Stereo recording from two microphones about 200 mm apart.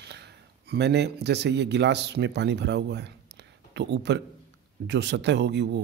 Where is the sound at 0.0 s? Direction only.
55° right (ahead or behind).